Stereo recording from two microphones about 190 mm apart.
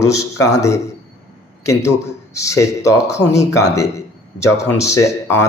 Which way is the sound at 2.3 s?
15° left (ahead or behind).